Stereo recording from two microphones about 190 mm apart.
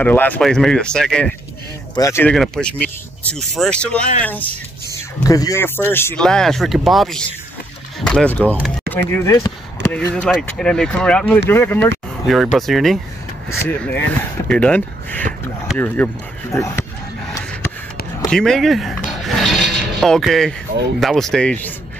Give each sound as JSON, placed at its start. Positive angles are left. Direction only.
{"t": 0.0, "sound": "speech", "side_deg": 10}
{"t": 2.0, "sound": "speech", "side_deg": 15}
{"t": 2.2, "sound": "speech", "side_deg": 0}
{"t": 5.2, "sound": "speech", "side_deg": 20}
{"t": 8.5, "sound": "speech", "side_deg": -10}
{"t": 9.1, "sound": "speech", "side_deg": 15}
{"t": 10.1, "sound": "speech", "side_deg": 5}
{"t": 12.3, "sound": "speech", "side_deg": 0}
{"t": 18.3, "sound": "speech", "side_deg": 5}
{"t": 19.0, "sound": "a sound", "side_deg": 0}
{"t": 21.0, "sound": "speech", "side_deg": 0}